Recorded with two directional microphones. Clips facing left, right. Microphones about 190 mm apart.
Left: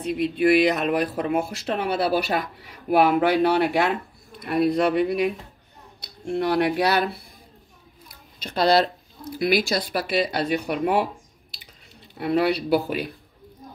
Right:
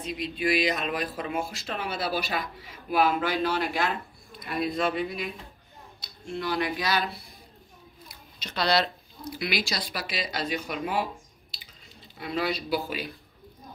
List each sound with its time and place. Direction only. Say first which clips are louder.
0.0 s speech: left 9 dB; 60° left (ahead or behind)
8.4 s speech: left 6 dB; 50° left (ahead or behind)
12.2 s speech: left 8 dB; 65° left (ahead or behind)